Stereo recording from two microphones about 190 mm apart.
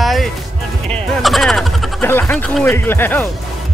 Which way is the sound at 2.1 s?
10° left (ahead or behind).